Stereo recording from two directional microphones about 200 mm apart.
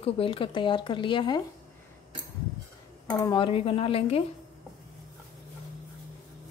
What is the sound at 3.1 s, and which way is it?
Speech, 20° left (ahead or behind).